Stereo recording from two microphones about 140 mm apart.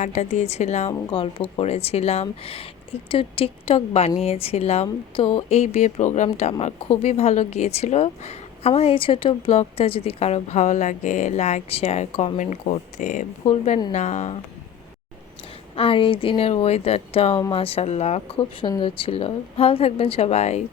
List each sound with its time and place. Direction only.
0.0 s speech: 55° left (ahead or behind)
13.4 s a woman's voice: 45° left (ahead or behind)
15.7 s speech: 40° left (ahead or behind)